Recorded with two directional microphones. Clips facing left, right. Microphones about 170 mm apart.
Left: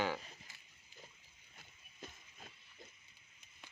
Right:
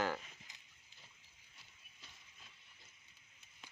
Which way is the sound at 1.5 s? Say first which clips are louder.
Left 5 dB; 50° left (ahead or behind).